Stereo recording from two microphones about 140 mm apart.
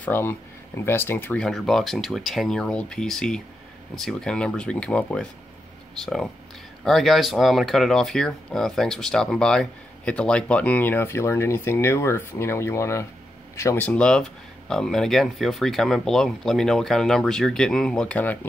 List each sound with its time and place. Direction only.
0.0 s speech: 15° left (ahead or behind)
1.4 s speech: centre (ahead or behind)